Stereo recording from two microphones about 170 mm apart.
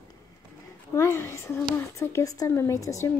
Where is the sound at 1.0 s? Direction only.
15° left (ahead or behind).